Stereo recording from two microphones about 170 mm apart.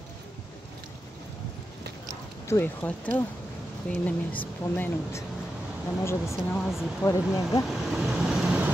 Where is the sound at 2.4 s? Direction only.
15° left (ahead or behind).